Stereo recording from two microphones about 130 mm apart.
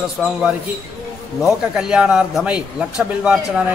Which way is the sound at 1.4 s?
5° right (ahead or behind).